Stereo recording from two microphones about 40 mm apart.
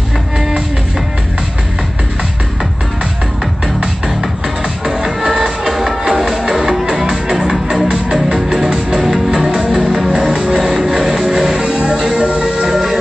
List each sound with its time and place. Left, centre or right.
3.6 s music: centre; by 12.7 s right